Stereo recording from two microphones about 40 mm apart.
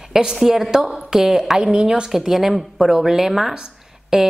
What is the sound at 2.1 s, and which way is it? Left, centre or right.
A woman's voice, centre.